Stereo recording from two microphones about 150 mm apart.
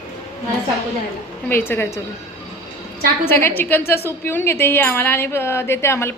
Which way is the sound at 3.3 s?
15° left (ahead or behind).